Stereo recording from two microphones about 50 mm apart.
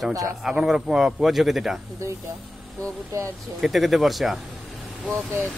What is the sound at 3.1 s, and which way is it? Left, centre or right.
Speech, right.